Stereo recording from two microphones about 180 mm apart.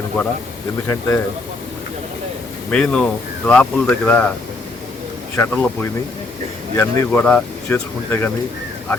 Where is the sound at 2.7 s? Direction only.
5° left (ahead or behind).